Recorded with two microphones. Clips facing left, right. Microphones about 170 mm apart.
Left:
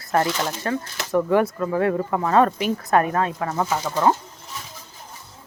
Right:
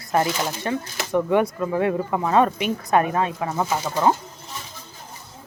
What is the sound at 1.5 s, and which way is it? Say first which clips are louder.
Speech: left 1 dB; 15° right (ahead or behind).